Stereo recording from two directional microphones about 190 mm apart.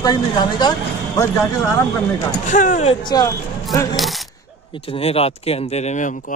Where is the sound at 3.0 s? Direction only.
20° left (ahead or behind).